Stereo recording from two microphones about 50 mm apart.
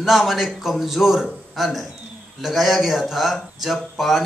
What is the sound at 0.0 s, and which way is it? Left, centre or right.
Speech, centre.